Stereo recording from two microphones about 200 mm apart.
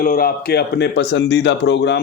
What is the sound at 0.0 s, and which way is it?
A man's voice, 45° left (ahead or behind).